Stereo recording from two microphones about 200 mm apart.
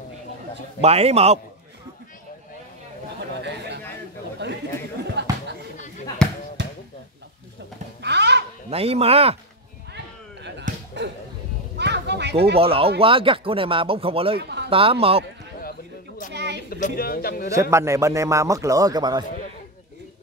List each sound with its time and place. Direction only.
0.7 s speech: 30° right (ahead or behind)
3.4 s chatter: 55° right (ahead or behind)
5.2 s a sound: 60° right (ahead or behind)
6.2 s basketball bounce: 5° left (ahead or behind)
6.6 s a sound: 60° right (ahead or behind)
8.0 s a sound: 55° right (ahead or behind)
8.6 s speech: 30° right (ahead or behind)
11.0 s speech: 60° right (ahead or behind)
11.7 s a sound: 60° right (ahead or behind)
12.5 s speech: 30° right (ahead or behind)
14.3 s a man's voice: 55° right (ahead or behind)
14.7 s speech: 25° right (ahead or behind)
16.6 s a man's voice: 50° left (ahead or behind)
17.5 s a man's voice: 15° right (ahead or behind)